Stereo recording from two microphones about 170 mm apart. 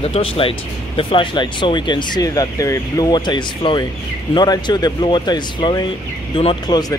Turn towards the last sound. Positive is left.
turn(degrees=25)  # may be behind; listen again after turning